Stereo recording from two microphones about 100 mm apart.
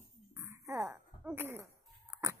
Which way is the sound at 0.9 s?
20° right (ahead or behind).